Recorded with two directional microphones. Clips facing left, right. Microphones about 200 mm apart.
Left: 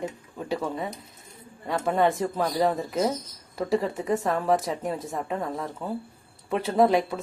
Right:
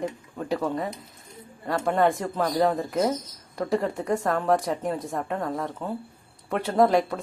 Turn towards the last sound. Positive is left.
turn(degrees=0)  # may be behind; listen again after turning